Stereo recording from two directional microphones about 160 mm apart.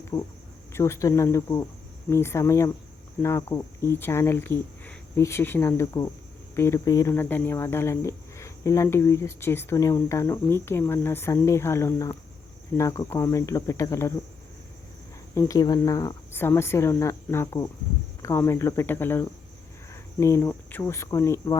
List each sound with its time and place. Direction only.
0.0 s cricket: 20° left (ahead or behind)
0.7 s speech: 15° left (ahead or behind)
15.4 s speech: 20° left (ahead or behind)